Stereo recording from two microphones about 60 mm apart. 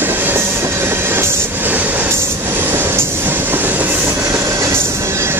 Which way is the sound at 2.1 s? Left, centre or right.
Right.